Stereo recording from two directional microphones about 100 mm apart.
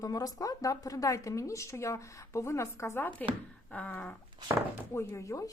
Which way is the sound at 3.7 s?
15° left (ahead or behind).